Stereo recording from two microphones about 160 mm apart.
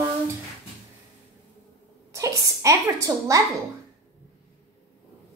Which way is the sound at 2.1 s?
20° right (ahead or behind).